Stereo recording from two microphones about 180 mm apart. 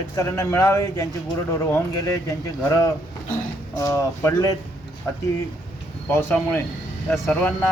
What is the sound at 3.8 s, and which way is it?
A man's voice, 15° left (ahead or behind).